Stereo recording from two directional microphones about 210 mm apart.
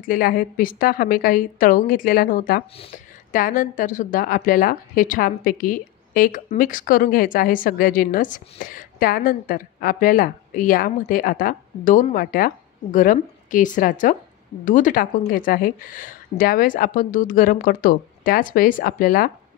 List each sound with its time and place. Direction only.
0.0 s a woman's voice: 40° left (ahead or behind)